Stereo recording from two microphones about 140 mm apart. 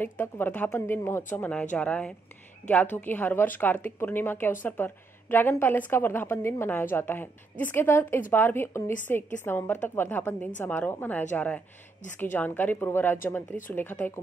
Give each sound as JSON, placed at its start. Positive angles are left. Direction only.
{"t": 0.0, "sound": "a woman's voice", "side_deg": 15}